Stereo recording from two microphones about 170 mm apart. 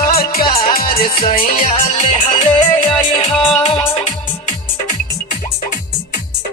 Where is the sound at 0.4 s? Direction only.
30° left (ahead or behind).